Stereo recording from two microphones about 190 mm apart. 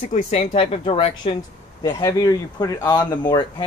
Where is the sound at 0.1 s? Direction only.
40° left (ahead or behind).